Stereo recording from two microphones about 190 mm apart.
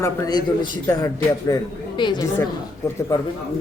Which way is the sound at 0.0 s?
20° left (ahead or behind).